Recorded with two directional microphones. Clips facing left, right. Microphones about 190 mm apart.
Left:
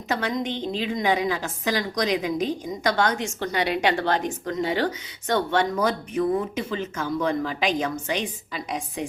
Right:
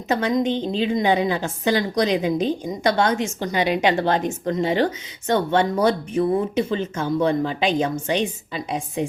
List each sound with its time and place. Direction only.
0.1 s a woman's voice: 20° right (ahead or behind)